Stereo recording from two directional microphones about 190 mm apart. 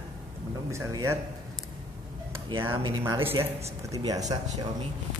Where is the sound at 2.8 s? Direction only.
25° right (ahead or behind).